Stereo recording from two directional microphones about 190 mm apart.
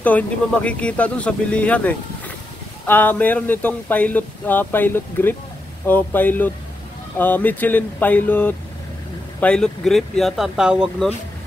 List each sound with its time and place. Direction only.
0.0 s speech: 5° left (ahead or behind)